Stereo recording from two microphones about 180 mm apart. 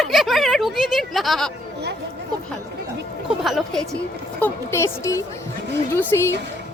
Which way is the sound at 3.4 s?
Centre (ahead or behind).